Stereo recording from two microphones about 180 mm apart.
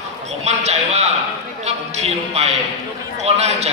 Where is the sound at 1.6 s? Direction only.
40° right (ahead or behind).